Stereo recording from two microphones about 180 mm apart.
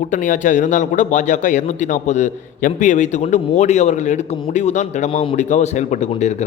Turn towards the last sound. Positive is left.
turn(degrees=40)  # may be behind; listen again after turning